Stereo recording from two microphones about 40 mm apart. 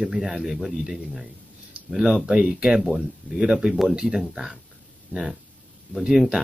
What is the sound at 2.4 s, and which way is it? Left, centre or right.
Speech, centre.